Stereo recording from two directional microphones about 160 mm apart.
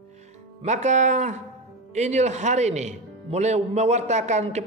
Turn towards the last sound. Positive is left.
turn(degrees=-45)  # may be behind; listen again after turning